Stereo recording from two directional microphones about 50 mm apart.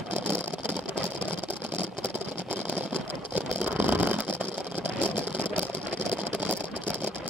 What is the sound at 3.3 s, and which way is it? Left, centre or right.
Vehicle, right.